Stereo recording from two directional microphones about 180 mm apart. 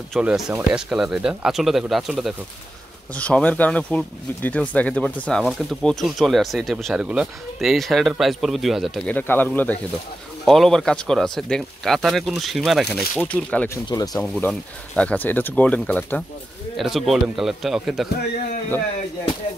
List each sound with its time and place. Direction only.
0.1 s speech: 5° right (ahead or behind)
13.8 s speech: 20° left (ahead or behind)
14.2 s speech: 5° left (ahead or behind)